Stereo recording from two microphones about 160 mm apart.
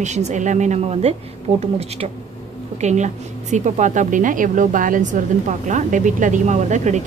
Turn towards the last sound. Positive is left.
turn(degrees=-45)  # may be behind; listen again after turning